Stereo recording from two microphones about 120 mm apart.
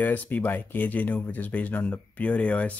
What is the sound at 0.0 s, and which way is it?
Speech, 15° left (ahead or behind).